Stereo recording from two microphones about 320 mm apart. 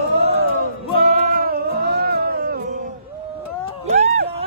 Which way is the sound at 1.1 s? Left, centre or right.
Right.